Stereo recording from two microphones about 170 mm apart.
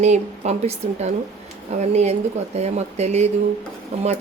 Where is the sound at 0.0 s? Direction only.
40° right (ahead or behind).